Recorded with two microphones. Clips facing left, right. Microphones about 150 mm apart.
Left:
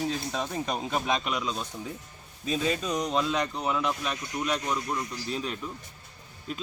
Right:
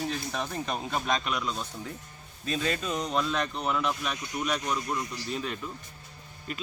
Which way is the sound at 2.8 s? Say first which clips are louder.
Left 2 dB; centre (ahead or behind).